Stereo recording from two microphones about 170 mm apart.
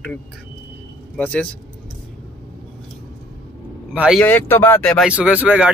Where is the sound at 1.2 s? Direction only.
10° left (ahead or behind).